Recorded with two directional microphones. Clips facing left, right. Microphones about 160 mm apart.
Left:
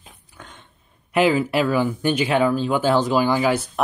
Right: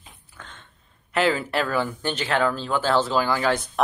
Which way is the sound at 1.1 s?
15° left (ahead or behind).